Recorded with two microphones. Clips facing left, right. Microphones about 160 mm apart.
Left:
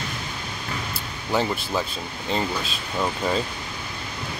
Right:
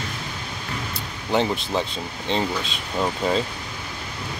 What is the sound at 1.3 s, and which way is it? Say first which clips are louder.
Speech: right 2 dB; 25° right (ahead or behind).